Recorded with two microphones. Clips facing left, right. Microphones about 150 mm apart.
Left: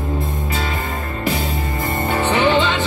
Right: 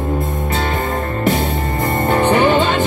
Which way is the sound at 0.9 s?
55° right (ahead or behind).